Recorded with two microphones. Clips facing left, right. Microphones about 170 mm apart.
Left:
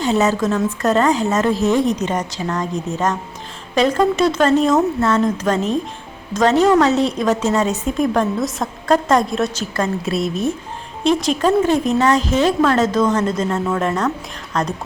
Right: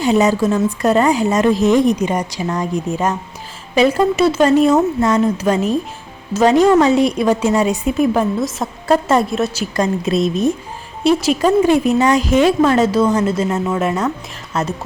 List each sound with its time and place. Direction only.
0.0 s a woman's voice: 15° right (ahead or behind)
9.7 s a woman's voice: 15° right (ahead or behind)
11.0 s a woman's voice: 5° right (ahead or behind)